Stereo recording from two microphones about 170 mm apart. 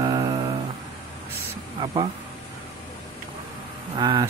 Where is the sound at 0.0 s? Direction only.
25° right (ahead or behind).